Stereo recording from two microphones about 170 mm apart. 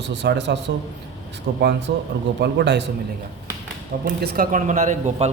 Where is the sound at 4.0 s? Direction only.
70° right (ahead or behind).